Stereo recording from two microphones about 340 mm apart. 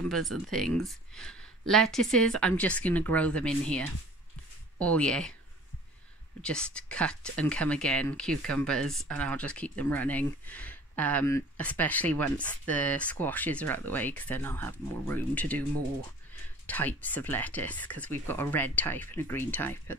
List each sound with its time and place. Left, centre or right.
0.3 s speech: right
0.8 s speech: centre
6.4 s speech: centre
16.6 s speech: centre